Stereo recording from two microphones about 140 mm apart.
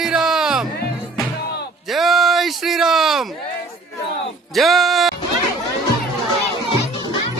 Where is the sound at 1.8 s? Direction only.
Centre (ahead or behind).